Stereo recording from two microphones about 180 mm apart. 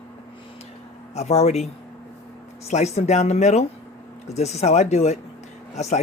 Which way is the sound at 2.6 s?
35° left (ahead or behind).